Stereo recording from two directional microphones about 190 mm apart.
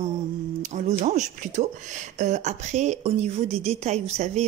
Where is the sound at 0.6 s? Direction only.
40° right (ahead or behind).